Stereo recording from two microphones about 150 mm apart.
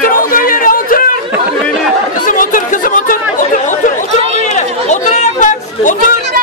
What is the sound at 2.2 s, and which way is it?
Chatter, 60° left (ahead or behind).